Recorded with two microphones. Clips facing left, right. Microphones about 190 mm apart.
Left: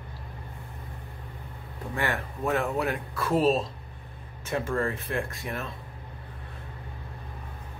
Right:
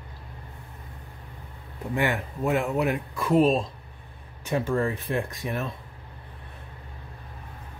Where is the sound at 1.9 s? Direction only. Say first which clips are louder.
Right 4 dB; 15° right (ahead or behind).